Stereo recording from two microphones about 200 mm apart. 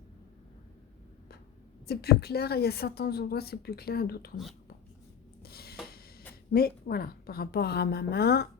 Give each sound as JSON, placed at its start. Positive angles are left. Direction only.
{"t": 1.9, "sound": "a woman's voice", "side_deg": 50}
{"t": 5.4, "sound": "a sound", "side_deg": 50}
{"t": 6.5, "sound": "a woman's voice", "side_deg": 50}